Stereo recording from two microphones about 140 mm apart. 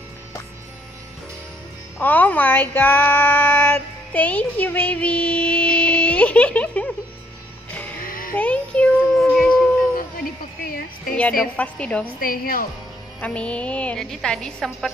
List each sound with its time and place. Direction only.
2.0 s a sound: 10° left (ahead or behind)
8.0 s music: 80° left
8.4 s child singing: 10° left (ahead or behind)
9.4 s howl: 10° left (ahead or behind)
10.6 s a sound: 90° left
11.1 s a woman's voice: 10° left (ahead or behind)
12.2 s a woman's voice: 90° left
13.2 s a woman's voice: 10° left (ahead or behind)